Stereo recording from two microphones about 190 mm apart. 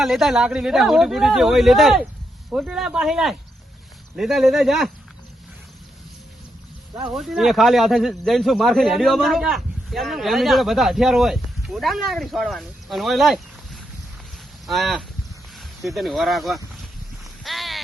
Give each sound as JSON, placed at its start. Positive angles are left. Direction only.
{"t": 0.0, "sound": "a man's voice", "side_deg": 0}
{"t": 7.1, "sound": "a man's voice", "side_deg": 0}
{"t": 17.4, "sound": "a sound", "side_deg": 0}